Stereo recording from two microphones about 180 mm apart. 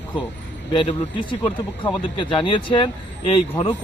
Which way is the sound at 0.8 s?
25° left (ahead or behind).